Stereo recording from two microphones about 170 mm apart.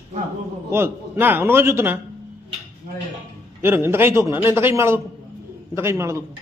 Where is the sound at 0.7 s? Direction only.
15° right (ahead or behind).